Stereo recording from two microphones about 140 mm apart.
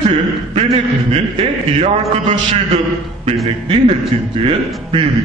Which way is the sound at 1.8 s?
50° right (ahead or behind).